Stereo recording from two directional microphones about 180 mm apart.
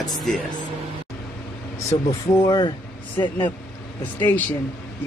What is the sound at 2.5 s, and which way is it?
Speech, 25° left (ahead or behind).